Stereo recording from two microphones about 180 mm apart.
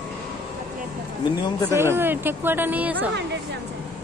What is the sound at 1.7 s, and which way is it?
Speech, 15° right (ahead or behind).